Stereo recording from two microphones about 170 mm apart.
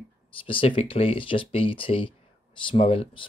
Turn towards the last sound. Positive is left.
turn(degrees=30)  # may be behind; listen again after turning